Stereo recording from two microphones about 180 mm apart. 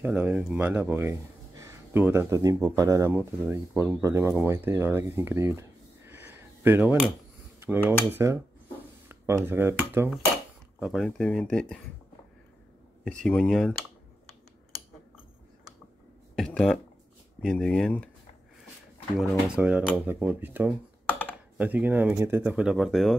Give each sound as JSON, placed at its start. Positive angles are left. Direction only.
{"t": 0.0, "sound": "speech", "side_deg": -5}
{"t": 8.1, "sound": "speech", "side_deg": -15}
{"t": 9.9, "sound": "speech", "side_deg": -5}
{"t": 13.2, "sound": "speech", "side_deg": 5}
{"t": 16.3, "sound": "speech", "side_deg": 5}
{"t": 19.1, "sound": "speech", "side_deg": -5}
{"t": 21.1, "sound": "a sound", "side_deg": 10}
{"t": 21.5, "sound": "speech", "side_deg": -10}